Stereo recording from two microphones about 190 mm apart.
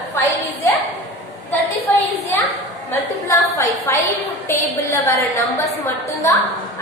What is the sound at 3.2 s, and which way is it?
A woman's voice, 15° left (ahead or behind).